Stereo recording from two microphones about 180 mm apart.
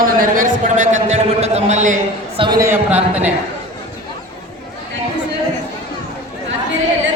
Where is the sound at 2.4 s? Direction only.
20° right (ahead or behind).